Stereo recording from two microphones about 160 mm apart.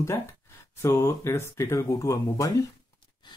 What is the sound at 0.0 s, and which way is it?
Speech, 15° left (ahead or behind).